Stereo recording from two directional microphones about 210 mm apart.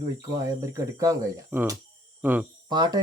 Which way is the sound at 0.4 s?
15° right (ahead or behind).